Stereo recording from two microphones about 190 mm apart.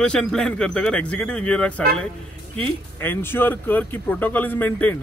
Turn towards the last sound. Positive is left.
turn(degrees=10)  # may be behind; listen again after turning